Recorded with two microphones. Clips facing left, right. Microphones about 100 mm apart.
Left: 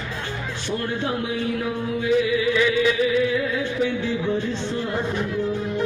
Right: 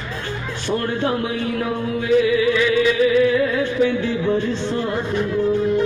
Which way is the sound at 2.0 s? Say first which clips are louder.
Right 4 dB; 70° right (ahead or behind).